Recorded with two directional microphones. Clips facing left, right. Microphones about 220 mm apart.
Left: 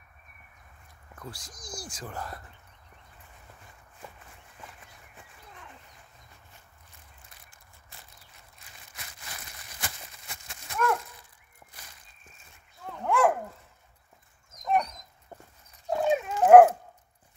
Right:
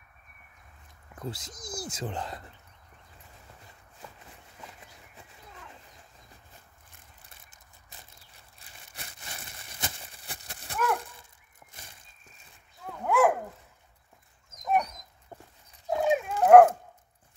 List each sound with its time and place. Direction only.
1.2 s speech: 20° right (ahead or behind)
8.4 s a sound: 35° right (ahead or behind)
12.8 s dog: 5° right (ahead or behind)
14.5 s dog: centre (ahead or behind)
15.9 s dog: centre (ahead or behind)